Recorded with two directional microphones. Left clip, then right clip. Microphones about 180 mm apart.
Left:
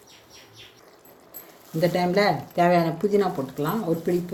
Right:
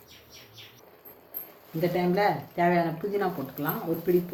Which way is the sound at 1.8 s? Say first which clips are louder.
Left 4 dB; 75° left (ahead or behind).